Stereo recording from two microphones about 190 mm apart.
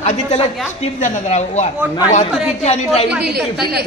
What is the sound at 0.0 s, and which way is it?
A woman's voice, 35° left (ahead or behind).